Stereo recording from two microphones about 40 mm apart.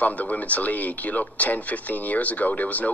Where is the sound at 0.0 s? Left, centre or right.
Left.